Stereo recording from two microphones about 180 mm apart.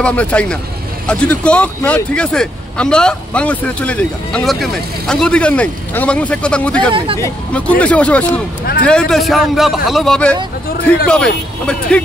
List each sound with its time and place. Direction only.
0.0 s a man's voice: 5° left (ahead or behind)
8.3 s speech: 60° left (ahead or behind)
8.8 s a man's voice: 5° left (ahead or behind)